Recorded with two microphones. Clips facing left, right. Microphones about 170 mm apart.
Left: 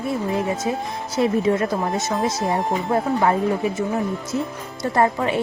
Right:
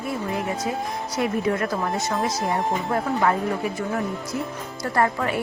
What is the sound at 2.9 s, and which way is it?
Speech, 25° left (ahead or behind).